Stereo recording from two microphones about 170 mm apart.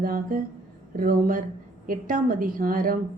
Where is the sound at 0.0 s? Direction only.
55° right (ahead or behind).